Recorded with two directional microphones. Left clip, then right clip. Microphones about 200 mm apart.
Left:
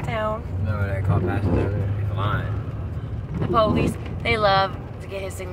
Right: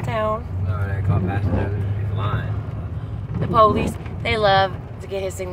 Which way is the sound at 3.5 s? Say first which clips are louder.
Right 5 dB; 20° right (ahead or behind).